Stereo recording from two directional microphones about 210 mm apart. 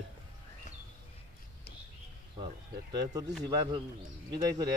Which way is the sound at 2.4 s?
20° right (ahead or behind).